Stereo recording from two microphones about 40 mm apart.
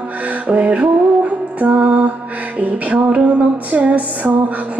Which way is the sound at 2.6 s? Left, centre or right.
Right.